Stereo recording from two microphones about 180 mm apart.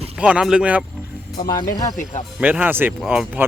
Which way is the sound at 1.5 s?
20° left (ahead or behind).